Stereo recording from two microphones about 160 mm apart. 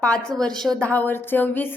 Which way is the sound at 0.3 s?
5° left (ahead or behind).